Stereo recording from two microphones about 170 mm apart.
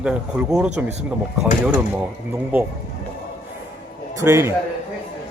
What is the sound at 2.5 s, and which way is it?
Speech, 10° right (ahead or behind).